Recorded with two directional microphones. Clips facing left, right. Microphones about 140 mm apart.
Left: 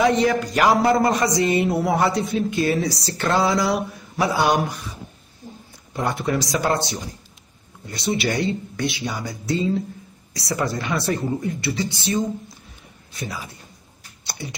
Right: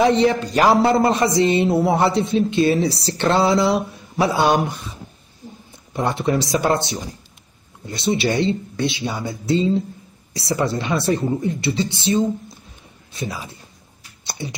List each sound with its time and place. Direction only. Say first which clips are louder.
0.0 s a man's voice: right 2 dB; 30° right (ahead or behind)